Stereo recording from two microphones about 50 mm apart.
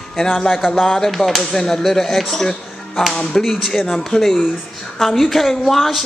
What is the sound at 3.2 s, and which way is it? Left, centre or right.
Speech, centre.